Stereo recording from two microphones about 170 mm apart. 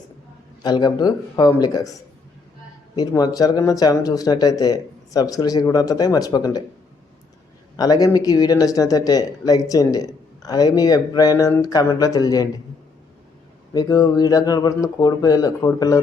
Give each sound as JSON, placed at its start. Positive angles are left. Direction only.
{"t": 0.6, "sound": "speech", "side_deg": 25}
{"t": 7.8, "sound": "speech", "side_deg": 20}
{"t": 13.7, "sound": "speech", "side_deg": 20}